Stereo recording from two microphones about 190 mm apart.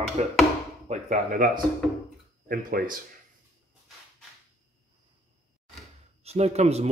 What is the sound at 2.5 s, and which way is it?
Speech, 45° right (ahead or behind).